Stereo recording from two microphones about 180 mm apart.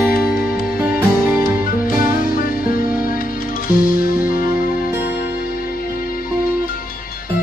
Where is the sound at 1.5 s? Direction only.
55° left (ahead or behind).